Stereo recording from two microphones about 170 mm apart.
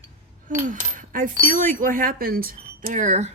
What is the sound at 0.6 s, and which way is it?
Speech, 50° right (ahead or behind).